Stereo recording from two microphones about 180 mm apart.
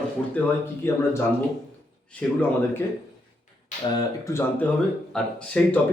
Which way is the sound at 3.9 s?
20° left (ahead or behind).